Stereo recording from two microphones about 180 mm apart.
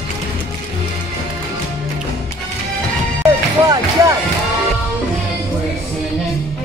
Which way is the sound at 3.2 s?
20° right (ahead or behind).